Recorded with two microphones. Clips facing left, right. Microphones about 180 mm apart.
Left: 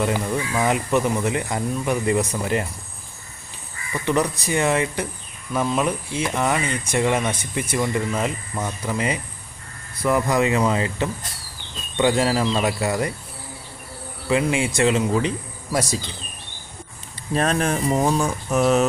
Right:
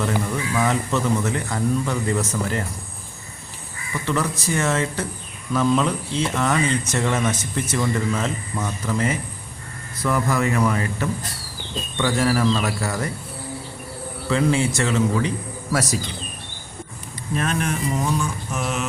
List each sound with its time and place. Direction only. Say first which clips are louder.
0.0 s speech: left 1 dB; 15° left (ahead or behind)
3.9 s speech: left 2 dB; 15° left (ahead or behind)
14.3 s speech: right 1 dB; 15° left (ahead or behind)
17.3 s speech: left 3 dB; 35° left (ahead or behind)